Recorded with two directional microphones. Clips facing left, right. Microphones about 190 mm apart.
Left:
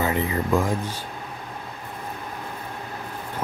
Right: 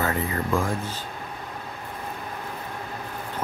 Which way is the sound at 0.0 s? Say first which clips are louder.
Left 2 dB; 20° left (ahead or behind).